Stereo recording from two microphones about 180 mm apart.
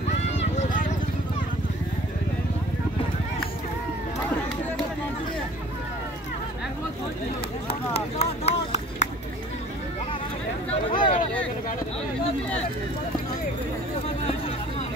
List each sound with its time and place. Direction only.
0.4 s clip-clop: 45° left (ahead or behind)
7.9 s vehicle: 35° left (ahead or behind)
10.7 s a sound: 25° left (ahead or behind)